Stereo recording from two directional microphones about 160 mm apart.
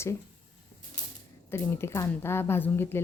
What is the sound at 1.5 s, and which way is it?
Speech, 15° left (ahead or behind).